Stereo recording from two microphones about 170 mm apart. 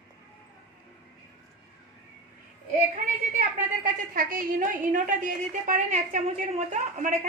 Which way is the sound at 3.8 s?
50° right (ahead or behind).